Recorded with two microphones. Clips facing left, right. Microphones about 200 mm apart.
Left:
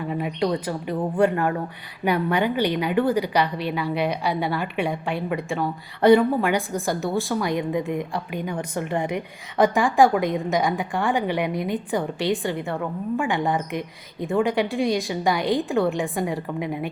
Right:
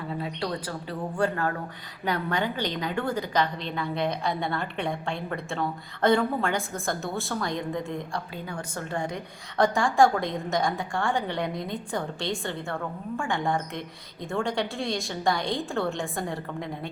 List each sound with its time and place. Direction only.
0.1 s a woman's voice: 15° left (ahead or behind)
15.0 s a woman's voice: 5° left (ahead or behind)
15.3 s a woman's voice: 15° left (ahead or behind)